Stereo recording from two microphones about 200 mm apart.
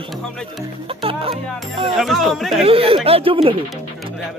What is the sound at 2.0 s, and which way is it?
Speech, centre (ahead or behind).